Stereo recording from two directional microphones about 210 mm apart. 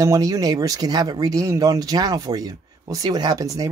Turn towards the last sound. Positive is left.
turn(degrees=-15)  # may be behind; listen again after turning